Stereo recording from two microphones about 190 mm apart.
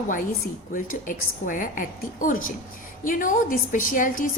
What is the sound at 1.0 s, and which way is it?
A woman's voice, 45° left (ahead or behind).